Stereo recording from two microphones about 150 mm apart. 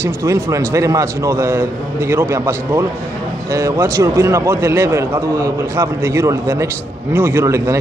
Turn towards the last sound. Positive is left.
turn(degrees=-20)  # may be behind; listen again after turning